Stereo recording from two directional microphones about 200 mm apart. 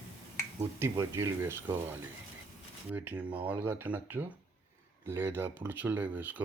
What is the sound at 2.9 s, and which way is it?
Speech, 10° right (ahead or behind).